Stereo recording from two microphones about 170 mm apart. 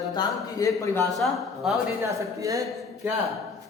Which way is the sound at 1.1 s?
Centre (ahead or behind).